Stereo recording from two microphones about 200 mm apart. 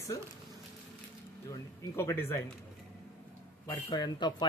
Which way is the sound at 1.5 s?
15° left (ahead or behind).